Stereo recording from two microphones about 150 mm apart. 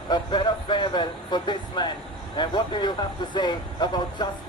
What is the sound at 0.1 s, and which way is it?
Speech, 30° left (ahead or behind).